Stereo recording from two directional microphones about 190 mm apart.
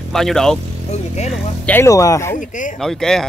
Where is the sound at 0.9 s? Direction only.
35° left (ahead or behind).